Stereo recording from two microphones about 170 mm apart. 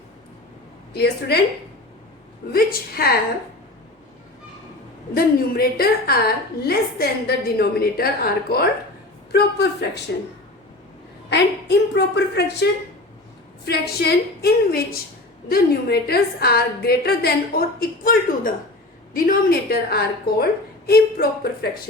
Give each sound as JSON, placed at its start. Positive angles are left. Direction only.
{"t": 0.9, "sound": "a woman's voice", "side_deg": 70}
{"t": 2.5, "sound": "a woman's voice", "side_deg": 65}
{"t": 5.1, "sound": "a woman's voice", "side_deg": 60}
{"t": 9.3, "sound": "a woman's voice", "side_deg": 75}
{"t": 11.3, "sound": "a woman's voice", "side_deg": 85}
{"t": 13.7, "sound": "a woman's voice", "side_deg": 70}